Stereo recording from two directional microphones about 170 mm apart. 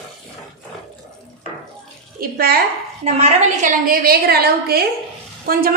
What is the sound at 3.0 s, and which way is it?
A woman's voice, 45° right (ahead or behind).